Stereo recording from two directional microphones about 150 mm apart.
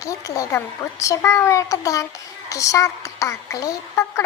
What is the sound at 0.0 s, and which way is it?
A child's voice, 20° left (ahead or behind).